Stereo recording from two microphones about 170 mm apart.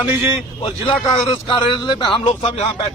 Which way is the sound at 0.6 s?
30° left (ahead or behind).